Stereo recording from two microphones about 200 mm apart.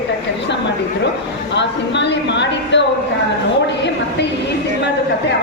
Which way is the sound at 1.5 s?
60° left (ahead or behind).